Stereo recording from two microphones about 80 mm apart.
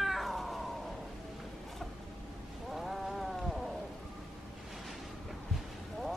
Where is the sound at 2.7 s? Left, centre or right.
Centre.